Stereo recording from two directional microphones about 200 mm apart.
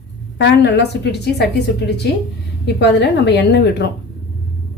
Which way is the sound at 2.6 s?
55° left (ahead or behind).